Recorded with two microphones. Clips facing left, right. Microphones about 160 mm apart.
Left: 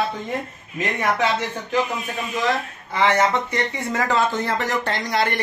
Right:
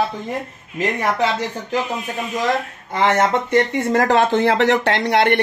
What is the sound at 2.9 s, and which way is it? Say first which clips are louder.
Speech: right 2 dB; 50° right (ahead or behind).